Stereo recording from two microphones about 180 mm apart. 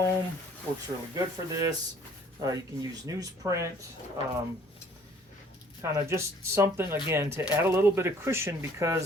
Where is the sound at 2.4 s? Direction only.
20° right (ahead or behind).